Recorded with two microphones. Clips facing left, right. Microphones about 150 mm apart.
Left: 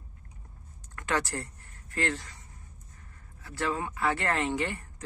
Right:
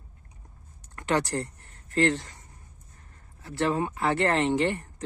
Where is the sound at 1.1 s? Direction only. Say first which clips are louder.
Right 4 dB; 20° right (ahead or behind).